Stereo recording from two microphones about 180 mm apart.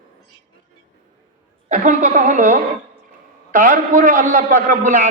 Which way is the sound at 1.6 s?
45° right (ahead or behind).